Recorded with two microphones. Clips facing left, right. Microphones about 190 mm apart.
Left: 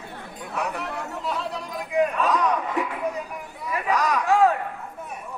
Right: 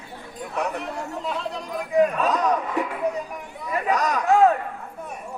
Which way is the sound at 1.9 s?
35° right (ahead or behind).